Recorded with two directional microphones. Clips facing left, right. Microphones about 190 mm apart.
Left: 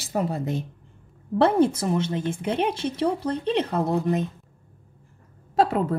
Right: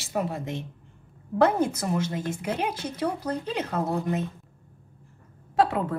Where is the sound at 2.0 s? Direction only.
30° left (ahead or behind).